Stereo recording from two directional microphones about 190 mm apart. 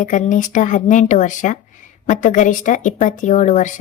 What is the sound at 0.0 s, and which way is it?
A woman's voice, 40° left (ahead or behind).